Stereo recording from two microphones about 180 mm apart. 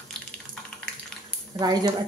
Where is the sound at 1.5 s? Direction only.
20° right (ahead or behind).